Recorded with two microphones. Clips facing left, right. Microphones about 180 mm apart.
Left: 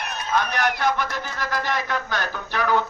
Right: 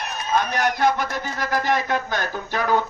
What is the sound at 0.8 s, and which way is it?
Speech, 45° right (ahead or behind).